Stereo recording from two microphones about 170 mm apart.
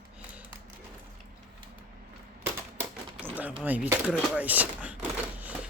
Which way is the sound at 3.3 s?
10° right (ahead or behind).